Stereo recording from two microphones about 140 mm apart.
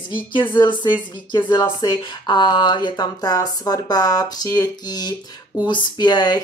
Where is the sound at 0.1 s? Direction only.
35° left (ahead or behind).